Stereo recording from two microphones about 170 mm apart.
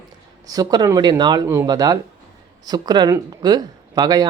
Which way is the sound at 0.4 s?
20° right (ahead or behind).